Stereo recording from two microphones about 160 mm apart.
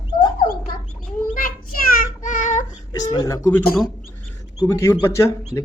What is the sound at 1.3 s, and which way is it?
Child singing, 65° left (ahead or behind).